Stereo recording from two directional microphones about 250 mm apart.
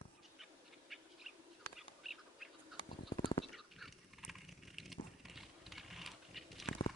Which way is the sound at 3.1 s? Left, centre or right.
Centre.